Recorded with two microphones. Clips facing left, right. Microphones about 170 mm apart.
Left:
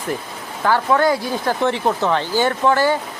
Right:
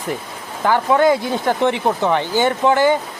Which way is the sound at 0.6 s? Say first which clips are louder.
Right 2 dB; 20° right (ahead or behind).